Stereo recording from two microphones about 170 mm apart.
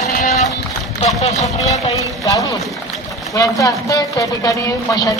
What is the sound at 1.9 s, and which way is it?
Speech, 20° left (ahead or behind).